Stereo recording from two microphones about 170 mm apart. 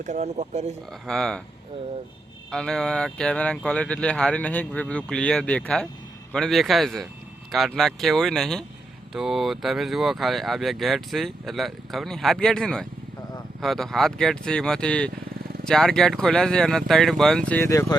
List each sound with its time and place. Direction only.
0.0 s speech: 45° right (ahead or behind)
1.0 s speech: 5° left (ahead or behind)
2.5 s speech: 5° left (ahead or behind)
17.7 s speech: 20° left (ahead or behind)